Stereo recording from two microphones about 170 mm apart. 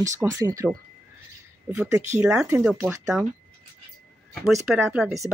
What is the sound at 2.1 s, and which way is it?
Speech, 10° right (ahead or behind).